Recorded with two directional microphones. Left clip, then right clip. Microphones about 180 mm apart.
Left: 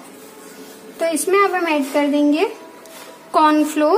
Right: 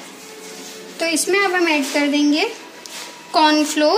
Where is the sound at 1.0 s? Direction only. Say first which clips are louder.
Left 2 dB; 50° left (ahead or behind).